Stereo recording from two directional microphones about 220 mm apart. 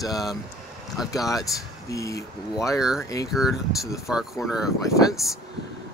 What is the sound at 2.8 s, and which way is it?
Speech, centre (ahead or behind).